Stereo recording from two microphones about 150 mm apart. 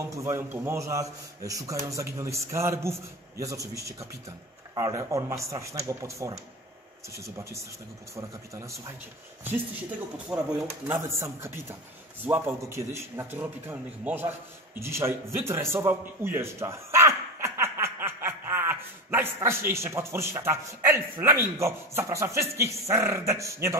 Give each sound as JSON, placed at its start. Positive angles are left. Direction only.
{"t": 0.0, "sound": "a man's voice", "side_deg": -20}
{"t": 9.4, "sound": "a man's voice", "side_deg": -10}
{"t": 14.8, "sound": "a sound", "side_deg": -15}
{"t": 19.7, "sound": "a man's voice", "side_deg": -15}